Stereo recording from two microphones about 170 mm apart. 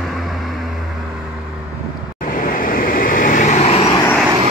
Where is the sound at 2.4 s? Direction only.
55° left (ahead or behind); by 3.8 s 40° left (ahead or behind).